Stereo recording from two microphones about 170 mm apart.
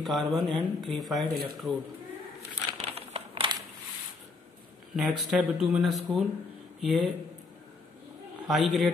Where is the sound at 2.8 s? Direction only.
35° right (ahead or behind).